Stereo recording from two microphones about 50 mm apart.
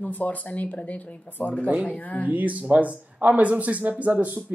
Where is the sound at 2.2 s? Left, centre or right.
Right.